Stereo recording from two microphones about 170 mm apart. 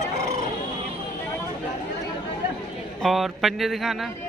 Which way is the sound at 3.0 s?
Centre (ahead or behind).